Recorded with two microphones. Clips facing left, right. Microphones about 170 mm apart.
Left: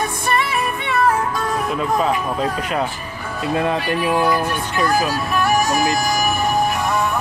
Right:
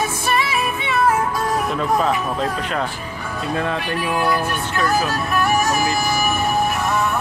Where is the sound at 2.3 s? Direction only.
10° left (ahead or behind).